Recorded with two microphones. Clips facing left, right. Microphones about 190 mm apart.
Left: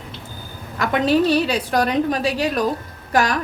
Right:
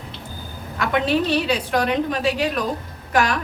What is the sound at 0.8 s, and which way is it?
A woman's voice, 40° left (ahead or behind).